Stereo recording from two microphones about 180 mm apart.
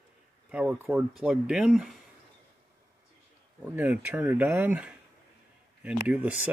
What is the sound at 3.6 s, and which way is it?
Speech, 10° right (ahead or behind).